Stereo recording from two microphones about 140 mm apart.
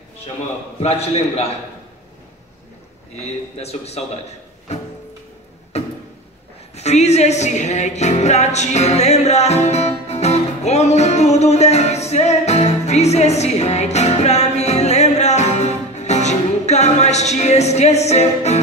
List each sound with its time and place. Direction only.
0.7 s a man's voice: 50° left (ahead or behind)
3.2 s a man's voice: 50° left (ahead or behind)
5.7 s a sound: 50° left (ahead or behind)
6.7 s music: 50° left (ahead or behind)